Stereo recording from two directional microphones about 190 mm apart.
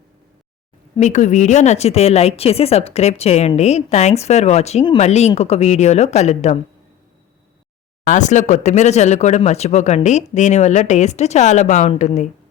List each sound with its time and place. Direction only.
0.9 s speech: 40° left (ahead or behind)
8.0 s speech: 40° left (ahead or behind)